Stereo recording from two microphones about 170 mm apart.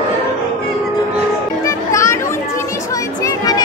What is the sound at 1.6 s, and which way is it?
Music, 15° left (ahead or behind).